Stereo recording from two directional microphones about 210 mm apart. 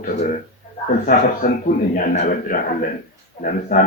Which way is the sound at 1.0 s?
45° left (ahead or behind).